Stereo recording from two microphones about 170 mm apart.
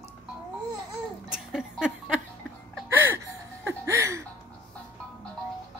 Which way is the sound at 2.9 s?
15° right (ahead or behind).